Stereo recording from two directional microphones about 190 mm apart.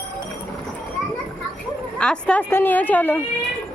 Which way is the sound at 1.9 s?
5° left (ahead or behind).